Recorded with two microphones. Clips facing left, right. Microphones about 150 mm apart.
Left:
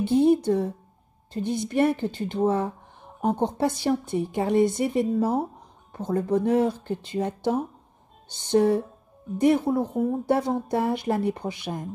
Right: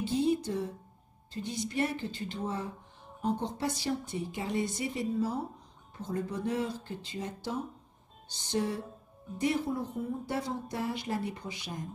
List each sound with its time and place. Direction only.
0.0 s a woman's voice: 60° left (ahead or behind)